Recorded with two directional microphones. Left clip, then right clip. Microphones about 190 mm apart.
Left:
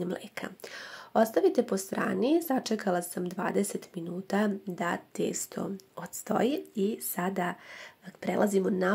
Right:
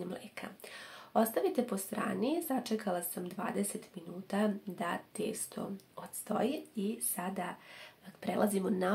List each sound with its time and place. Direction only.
0.0 s speech: 40° left (ahead or behind)